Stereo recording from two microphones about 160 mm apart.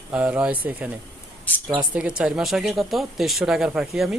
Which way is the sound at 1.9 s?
5° right (ahead or behind).